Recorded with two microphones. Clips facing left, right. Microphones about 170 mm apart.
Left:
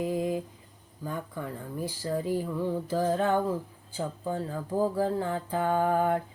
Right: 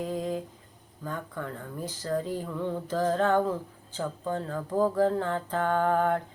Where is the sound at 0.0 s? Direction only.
10° left (ahead or behind).